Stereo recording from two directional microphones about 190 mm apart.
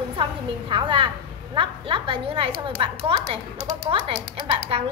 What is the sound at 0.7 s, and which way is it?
A woman's voice, 25° right (ahead or behind).